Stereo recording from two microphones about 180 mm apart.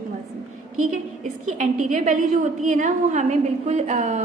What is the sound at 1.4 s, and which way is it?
A woman's voice, 40° right (ahead or behind).